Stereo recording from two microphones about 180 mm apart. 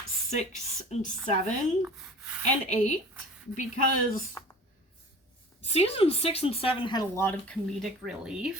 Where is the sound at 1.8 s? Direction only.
5° right (ahead or behind).